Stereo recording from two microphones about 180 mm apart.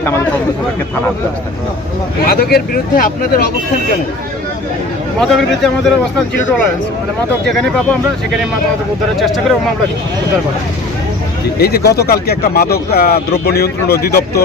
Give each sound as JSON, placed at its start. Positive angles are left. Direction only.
{"t": 2.2, "sound": "speech", "side_deg": 55}
{"t": 5.2, "sound": "speech", "side_deg": 0}
{"t": 7.4, "sound": "speech", "side_deg": 0}
{"t": 9.1, "sound": "speech", "side_deg": 0}
{"t": 11.6, "sound": "speech", "side_deg": 60}